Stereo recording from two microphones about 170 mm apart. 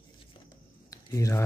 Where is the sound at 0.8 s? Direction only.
20° left (ahead or behind).